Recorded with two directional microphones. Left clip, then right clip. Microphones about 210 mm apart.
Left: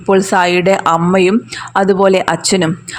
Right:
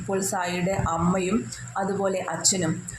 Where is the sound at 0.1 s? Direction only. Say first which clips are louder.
Left 16 dB; 45° left (ahead or behind).